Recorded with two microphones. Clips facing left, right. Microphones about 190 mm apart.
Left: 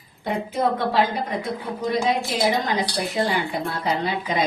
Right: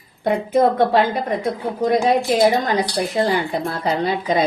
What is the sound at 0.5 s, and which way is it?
A woman's voice, 55° right (ahead or behind).